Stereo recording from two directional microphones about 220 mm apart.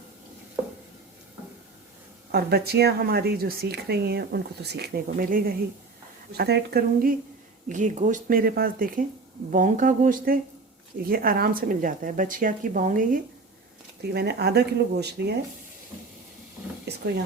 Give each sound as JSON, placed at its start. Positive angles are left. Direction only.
{"t": 2.3, "sound": "speech", "side_deg": -45}
{"t": 7.7, "sound": "a woman's voice", "side_deg": -35}
{"t": 14.0, "sound": "speech", "side_deg": -50}